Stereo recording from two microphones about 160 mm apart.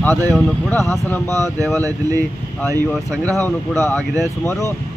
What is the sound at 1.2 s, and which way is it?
Speech, 15° left (ahead or behind).